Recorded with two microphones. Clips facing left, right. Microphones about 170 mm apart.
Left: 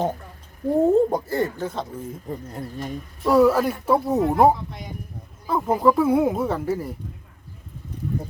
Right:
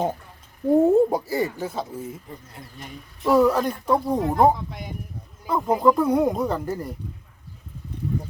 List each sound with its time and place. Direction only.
0.8 s speech: 10° right (ahead or behind)
2.5 s speech: 40° left (ahead or behind)
3.2 s speech: centre (ahead or behind)